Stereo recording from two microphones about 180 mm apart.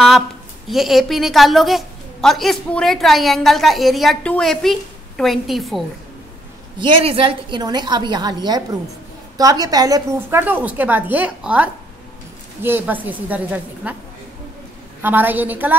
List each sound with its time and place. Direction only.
0.7 s a woman's voice: centre (ahead or behind)
6.8 s a woman's voice: 30° right (ahead or behind); by 13.9 s 10° right (ahead or behind)
15.0 s a woman's voice: 10° right (ahead or behind)